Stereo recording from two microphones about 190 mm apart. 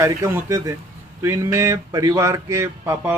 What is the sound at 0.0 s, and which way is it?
Speech, 15° right (ahead or behind).